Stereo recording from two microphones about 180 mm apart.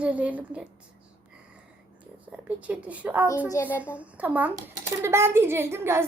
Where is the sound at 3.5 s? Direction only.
15° left (ahead or behind).